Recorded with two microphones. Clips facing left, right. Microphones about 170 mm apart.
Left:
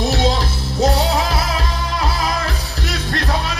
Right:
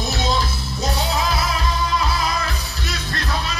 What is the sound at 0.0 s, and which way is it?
Music, 30° left (ahead or behind).